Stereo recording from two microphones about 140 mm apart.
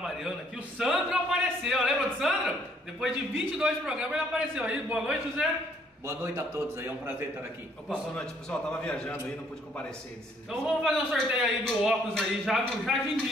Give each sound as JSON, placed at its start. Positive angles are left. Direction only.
{"t": 0.0, "sound": "a sound", "side_deg": 0}
{"t": 3.0, "sound": "a man's voice", "side_deg": -5}
{"t": 6.0, "sound": "a man's voice", "side_deg": -20}
{"t": 8.1, "sound": "a man's voice", "side_deg": 5}
{"t": 10.5, "sound": "a man's voice", "side_deg": 0}